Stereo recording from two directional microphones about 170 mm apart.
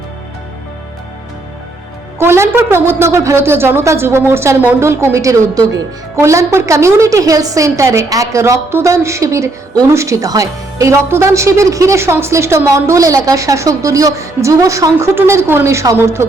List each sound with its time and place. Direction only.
2.1 s a woman's voice: 15° right (ahead or behind)